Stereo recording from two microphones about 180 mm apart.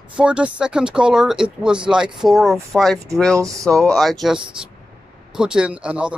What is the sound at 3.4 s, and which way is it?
Speech, 15° right (ahead or behind).